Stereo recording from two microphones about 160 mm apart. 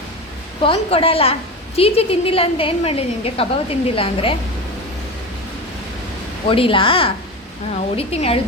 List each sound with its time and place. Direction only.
0.6 s a woman's voice: 35° left (ahead or behind)
6.5 s a woman's voice: 35° left (ahead or behind)